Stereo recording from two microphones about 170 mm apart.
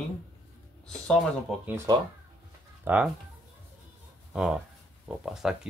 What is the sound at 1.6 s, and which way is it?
Speech, 15° right (ahead or behind).